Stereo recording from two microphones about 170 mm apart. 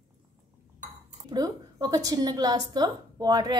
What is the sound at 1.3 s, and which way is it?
A woman's voice, 25° right (ahead or behind).